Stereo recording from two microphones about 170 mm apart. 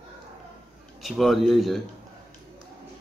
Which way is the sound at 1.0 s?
Centre (ahead or behind).